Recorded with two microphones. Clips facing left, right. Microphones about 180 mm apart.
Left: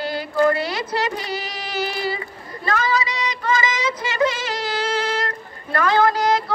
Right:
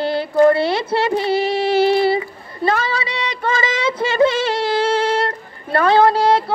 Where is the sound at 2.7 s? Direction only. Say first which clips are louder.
Right 2 dB; 30° right (ahead or behind).